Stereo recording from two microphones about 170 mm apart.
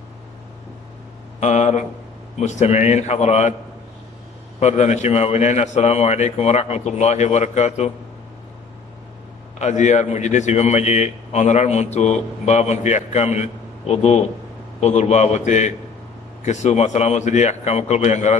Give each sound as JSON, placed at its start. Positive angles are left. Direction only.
{"t": 1.4, "sound": "a man's voice", "side_deg": 40}
{"t": 4.6, "sound": "a man's voice", "side_deg": 40}
{"t": 9.6, "sound": "a man's voice", "side_deg": 40}